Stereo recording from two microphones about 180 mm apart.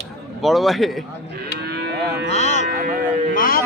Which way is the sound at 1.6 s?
65° right (ahead or behind).